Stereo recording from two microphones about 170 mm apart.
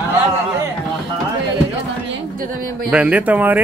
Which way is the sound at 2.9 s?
10° right (ahead or behind).